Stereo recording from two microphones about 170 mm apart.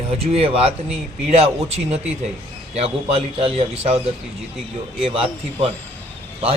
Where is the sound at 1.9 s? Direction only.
40° right (ahead or behind).